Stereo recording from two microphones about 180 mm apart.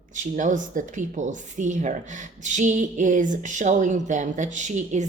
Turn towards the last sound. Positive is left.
turn(degrees=-40)  # may be behind; listen again after turning